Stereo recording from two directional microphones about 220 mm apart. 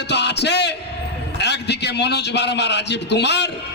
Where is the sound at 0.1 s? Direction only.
50° left (ahead or behind).